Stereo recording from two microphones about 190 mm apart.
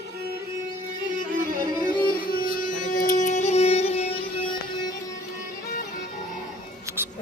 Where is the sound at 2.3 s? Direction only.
50° left (ahead or behind).